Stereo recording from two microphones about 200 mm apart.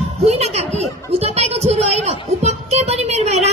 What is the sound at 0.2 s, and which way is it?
A woman's voice, 30° right (ahead or behind).